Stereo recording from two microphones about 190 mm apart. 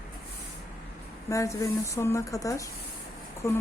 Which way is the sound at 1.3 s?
15° left (ahead or behind).